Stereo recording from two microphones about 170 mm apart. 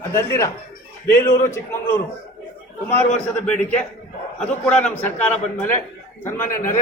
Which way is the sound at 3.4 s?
5° left (ahead or behind).